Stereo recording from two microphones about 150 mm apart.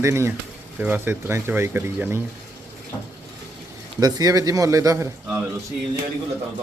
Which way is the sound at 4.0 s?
25° right (ahead or behind).